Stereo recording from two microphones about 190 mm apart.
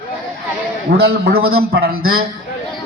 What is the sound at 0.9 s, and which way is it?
A man's voice, 55° right (ahead or behind).